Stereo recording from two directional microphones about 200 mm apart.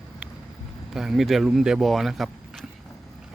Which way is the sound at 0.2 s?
5° right (ahead or behind).